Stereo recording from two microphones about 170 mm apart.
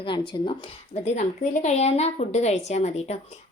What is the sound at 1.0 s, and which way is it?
A woman's voice, 45° left (ahead or behind).